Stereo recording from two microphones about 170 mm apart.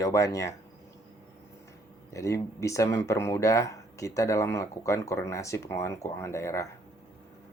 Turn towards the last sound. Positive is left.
turn(degrees=15)  # may be behind; listen again after turning